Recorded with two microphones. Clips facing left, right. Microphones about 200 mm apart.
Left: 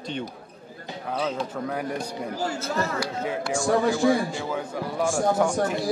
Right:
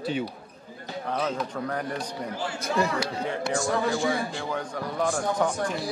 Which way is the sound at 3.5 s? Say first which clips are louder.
Left 5 dB; 5° left (ahead or behind).